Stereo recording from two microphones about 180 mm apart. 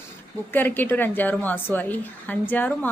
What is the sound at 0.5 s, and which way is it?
A woman's voice, 10° left (ahead or behind).